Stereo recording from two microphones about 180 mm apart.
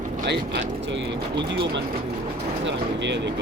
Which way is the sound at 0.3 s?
80° right.